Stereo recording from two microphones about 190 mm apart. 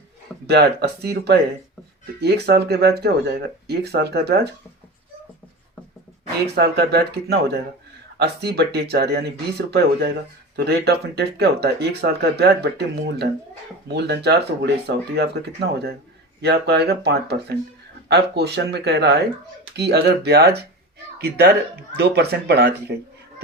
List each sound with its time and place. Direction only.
0.4 s speech: 60° right (ahead or behind)
6.5 s speech: 60° right (ahead or behind)